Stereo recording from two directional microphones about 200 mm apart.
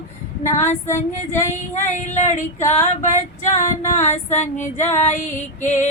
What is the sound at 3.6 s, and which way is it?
Female singing, 35° left (ahead or behind).